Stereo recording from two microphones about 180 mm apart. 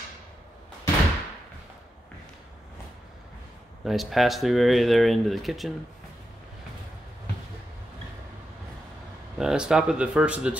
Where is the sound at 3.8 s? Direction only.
Centre (ahead or behind).